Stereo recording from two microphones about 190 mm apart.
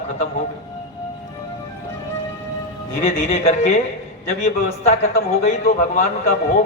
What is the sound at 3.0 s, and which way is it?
A man's voice, 35° left (ahead or behind).